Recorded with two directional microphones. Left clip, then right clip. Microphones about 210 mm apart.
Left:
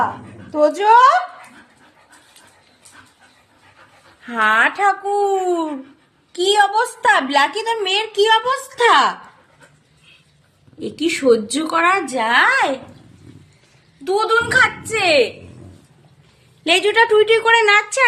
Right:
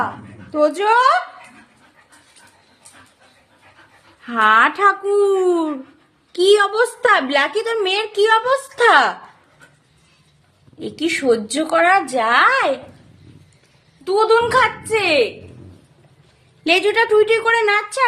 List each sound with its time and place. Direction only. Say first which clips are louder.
0.5 s a woman's voice: left 3 dB; centre (ahead or behind)
4.3 s a woman's voice: right 2 dB; 5° right (ahead or behind)
10.8 s a woman's voice: even; 15° right (ahead or behind)
14.0 s a woman's voice: right 2 dB; 5° left (ahead or behind)
16.6 s a woman's voice: left 1 dB; 5° right (ahead or behind)